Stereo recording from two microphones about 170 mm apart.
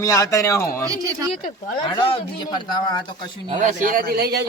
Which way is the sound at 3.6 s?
50° right (ahead or behind).